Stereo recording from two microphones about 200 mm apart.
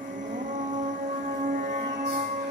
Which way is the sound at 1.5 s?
40° right (ahead or behind).